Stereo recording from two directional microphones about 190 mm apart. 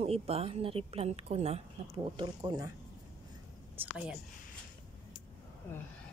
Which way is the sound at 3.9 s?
5° right (ahead or behind).